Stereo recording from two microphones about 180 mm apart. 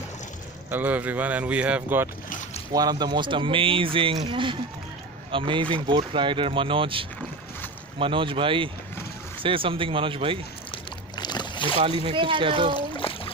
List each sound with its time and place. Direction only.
0.7 s speech: 10° right (ahead or behind)
2.2 s boat: 45° left (ahead or behind)
2.7 s speech: 20° right (ahead or behind)
10.7 s boat: 25° left (ahead or behind)
11.8 s speech: 30° right (ahead or behind)
12.9 s music: 30° left (ahead or behind)